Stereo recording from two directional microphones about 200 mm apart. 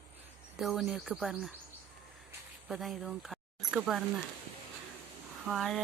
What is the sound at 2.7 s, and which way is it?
Speech, centre (ahead or behind).